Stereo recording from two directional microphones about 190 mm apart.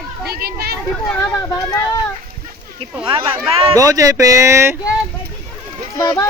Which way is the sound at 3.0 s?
20° right (ahead or behind).